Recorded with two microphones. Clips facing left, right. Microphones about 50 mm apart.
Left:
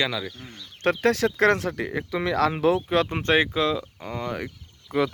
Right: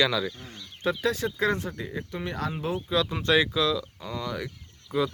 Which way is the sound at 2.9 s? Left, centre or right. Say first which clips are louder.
Left 2 dB; left.